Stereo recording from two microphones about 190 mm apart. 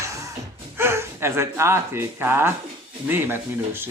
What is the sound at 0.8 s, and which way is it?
Speech, 15° right (ahead or behind).